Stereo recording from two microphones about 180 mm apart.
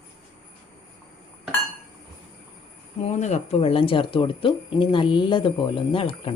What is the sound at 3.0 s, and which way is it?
Speech, 40° left (ahead or behind).